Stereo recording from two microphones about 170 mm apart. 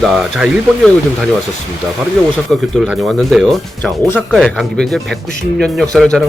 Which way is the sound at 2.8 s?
Centre (ahead or behind).